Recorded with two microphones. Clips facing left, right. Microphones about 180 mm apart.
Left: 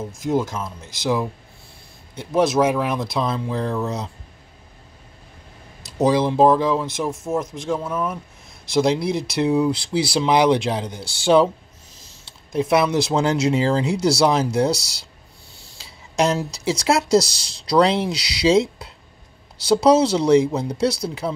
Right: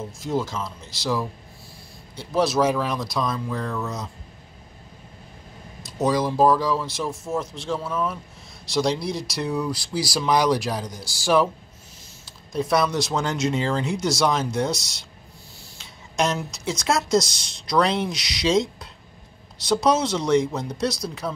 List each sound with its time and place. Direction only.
0.0 s speech: 15° left (ahead or behind)
5.8 s speech: 30° left (ahead or behind)